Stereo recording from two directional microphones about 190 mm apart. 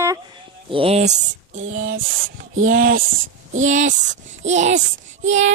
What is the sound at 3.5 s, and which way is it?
A child's voice, 40° right (ahead or behind).